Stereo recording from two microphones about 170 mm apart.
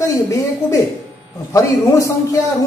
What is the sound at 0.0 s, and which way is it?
A woman's voice, 20° left (ahead or behind).